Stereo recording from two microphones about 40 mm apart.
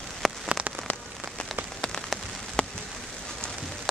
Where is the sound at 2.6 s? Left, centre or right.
Left.